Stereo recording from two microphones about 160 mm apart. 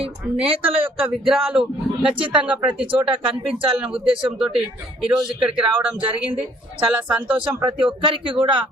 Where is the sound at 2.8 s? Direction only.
35° right (ahead or behind).